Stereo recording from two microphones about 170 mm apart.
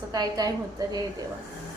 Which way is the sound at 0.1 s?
25° right (ahead or behind).